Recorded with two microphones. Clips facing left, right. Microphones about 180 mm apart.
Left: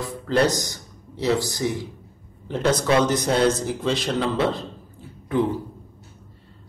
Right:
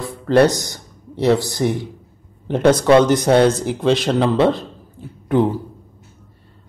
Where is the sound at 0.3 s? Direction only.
60° right (ahead or behind).